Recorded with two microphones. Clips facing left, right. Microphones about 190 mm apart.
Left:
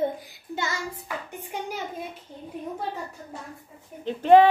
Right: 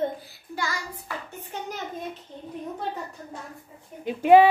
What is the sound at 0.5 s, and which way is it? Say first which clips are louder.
Child singing: left 1 dB; 25° left (ahead or behind).